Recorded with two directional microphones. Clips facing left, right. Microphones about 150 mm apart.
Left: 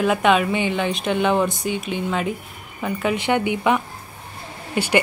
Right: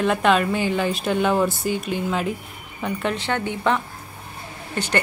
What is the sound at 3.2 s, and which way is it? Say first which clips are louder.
A woman's voice: left 5 dB; 15° left (ahead or behind).